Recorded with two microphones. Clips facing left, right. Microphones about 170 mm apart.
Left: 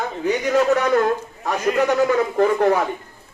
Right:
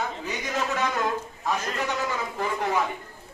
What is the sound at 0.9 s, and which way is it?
A man's voice, 60° left (ahead or behind).